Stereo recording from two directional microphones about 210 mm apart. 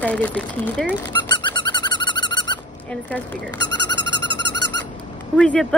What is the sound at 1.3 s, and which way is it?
Owl, 20° left (ahead or behind).